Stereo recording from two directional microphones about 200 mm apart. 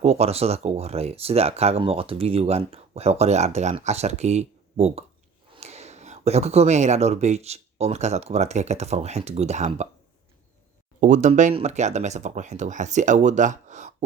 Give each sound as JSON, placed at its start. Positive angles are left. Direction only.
{"t": 0.0, "sound": "speech", "side_deg": -30}
{"t": 11.0, "sound": "speech", "side_deg": -35}